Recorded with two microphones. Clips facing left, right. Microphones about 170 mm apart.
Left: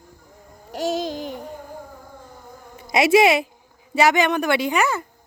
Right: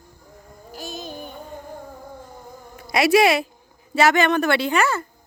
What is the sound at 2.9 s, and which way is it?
Speech, 20° left (ahead or behind).